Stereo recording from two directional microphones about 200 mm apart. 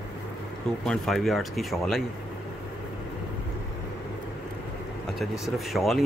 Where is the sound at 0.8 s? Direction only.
Centre (ahead or behind).